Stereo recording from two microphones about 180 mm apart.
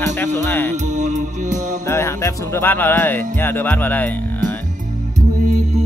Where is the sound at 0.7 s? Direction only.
40° right (ahead or behind).